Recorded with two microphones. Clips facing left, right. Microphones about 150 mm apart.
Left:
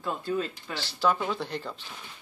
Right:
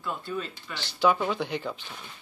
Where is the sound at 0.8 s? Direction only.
Centre (ahead or behind).